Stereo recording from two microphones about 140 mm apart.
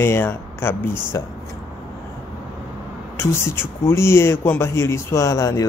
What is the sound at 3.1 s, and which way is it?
Speech, 20° left (ahead or behind).